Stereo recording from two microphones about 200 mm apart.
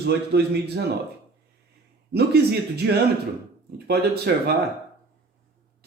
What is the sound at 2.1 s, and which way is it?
Speech, 55° right (ahead or behind).